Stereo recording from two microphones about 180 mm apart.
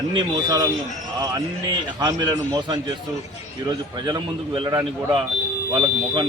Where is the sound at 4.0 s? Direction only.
25° right (ahead or behind).